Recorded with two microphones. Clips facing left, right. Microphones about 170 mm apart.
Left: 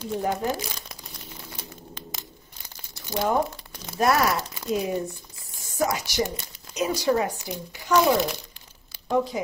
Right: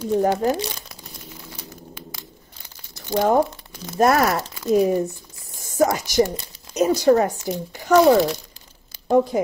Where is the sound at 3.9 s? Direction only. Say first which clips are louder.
Right 4 dB; 50° right (ahead or behind).